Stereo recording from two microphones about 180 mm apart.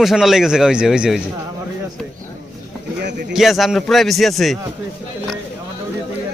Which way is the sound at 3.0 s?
75° right (ahead or behind).